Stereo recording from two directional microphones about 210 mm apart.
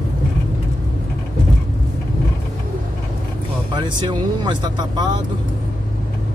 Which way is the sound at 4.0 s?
20° right (ahead or behind).